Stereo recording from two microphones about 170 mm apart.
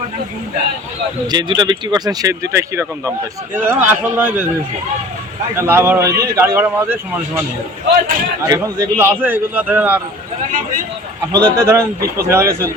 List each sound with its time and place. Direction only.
1.3 s speech: 25° right (ahead or behind); by 4.4 s 10° right (ahead or behind)
5.5 s speech: 15° right (ahead or behind)
8.4 s speech: 20° right (ahead or behind)
11.3 s speech: 15° right (ahead or behind)